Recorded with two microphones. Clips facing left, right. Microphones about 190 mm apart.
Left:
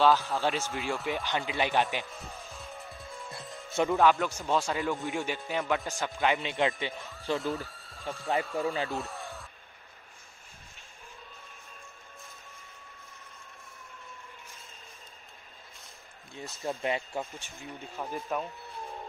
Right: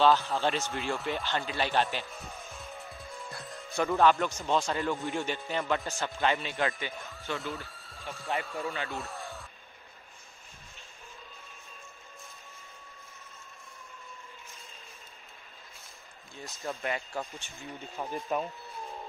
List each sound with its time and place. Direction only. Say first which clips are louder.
0.0 s speech: even; 5° left (ahead or behind)
1.2 s speech: left 1 dB; 15° left (ahead or behind)
2.1 s music: even; centre (ahead or behind)
3.9 s speech: right 1 dB; centre (ahead or behind); by 6.7 s 20° left (ahead or behind)
7.0 s speech: left 5 dB; centre (ahead or behind)
8.9 s a sound: left 2 dB; centre (ahead or behind)
16.3 s speech: left 3 dB; 25° left (ahead or behind)
17.9 s speech: right 1 dB; centre (ahead or behind)